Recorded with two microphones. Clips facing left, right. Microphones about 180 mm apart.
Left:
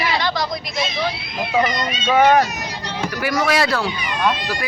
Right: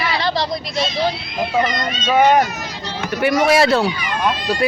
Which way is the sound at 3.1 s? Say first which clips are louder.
Right 6 dB; 25° right (ahead or behind).